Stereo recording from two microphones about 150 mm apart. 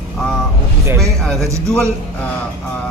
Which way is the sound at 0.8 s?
15° right (ahead or behind).